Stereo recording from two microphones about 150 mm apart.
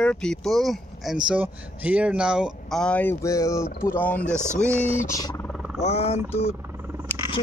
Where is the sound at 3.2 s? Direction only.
20° left (ahead or behind).